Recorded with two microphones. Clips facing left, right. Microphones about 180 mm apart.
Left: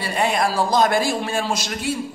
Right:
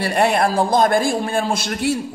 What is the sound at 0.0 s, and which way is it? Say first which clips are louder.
A man's voice: right 4 dB; 65° right (ahead or behind).